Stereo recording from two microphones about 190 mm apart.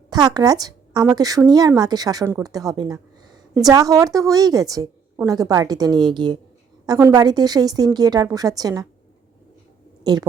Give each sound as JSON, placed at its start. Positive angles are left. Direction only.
{"t": 0.3, "sound": "a woman's voice", "side_deg": -20}
{"t": 10.0, "sound": "speech", "side_deg": -20}